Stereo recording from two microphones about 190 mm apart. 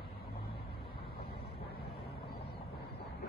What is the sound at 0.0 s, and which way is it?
Vehicle, 55° left (ahead or behind).